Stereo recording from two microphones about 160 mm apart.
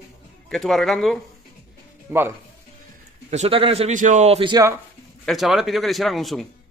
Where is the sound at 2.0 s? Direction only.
15° right (ahead or behind).